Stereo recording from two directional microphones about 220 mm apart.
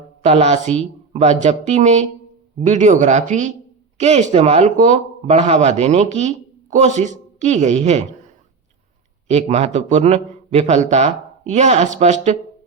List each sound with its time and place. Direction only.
0.2 s speech: 30° right (ahead or behind)
9.2 s speech: 30° right (ahead or behind)